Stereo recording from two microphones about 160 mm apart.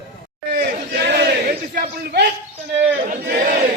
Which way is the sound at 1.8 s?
85° right.